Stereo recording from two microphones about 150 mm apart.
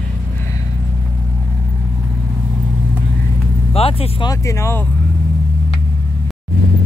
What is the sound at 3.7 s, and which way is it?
Vehicle, 40° left (ahead or behind).